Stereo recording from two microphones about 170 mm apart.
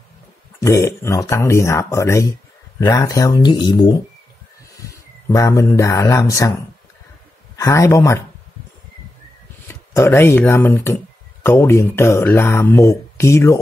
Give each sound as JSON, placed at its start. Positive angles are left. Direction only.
{"t": 0.6, "sound": "speech", "side_deg": 20}
{"t": 5.3, "sound": "speech", "side_deg": 20}
{"t": 7.5, "sound": "speech", "side_deg": 15}
{"t": 9.7, "sound": "speech", "side_deg": 15}